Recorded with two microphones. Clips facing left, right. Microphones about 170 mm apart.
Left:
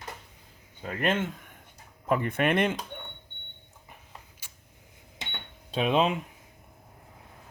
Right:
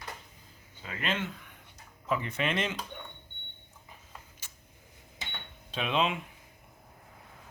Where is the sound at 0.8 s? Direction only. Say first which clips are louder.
Left 6 dB; 50° left (ahead or behind).